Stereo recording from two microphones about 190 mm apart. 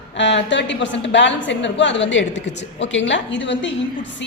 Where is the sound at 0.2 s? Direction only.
70° left (ahead or behind).